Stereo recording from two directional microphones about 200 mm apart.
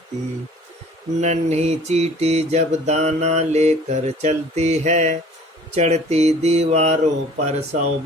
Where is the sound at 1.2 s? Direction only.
35° right (ahead or behind).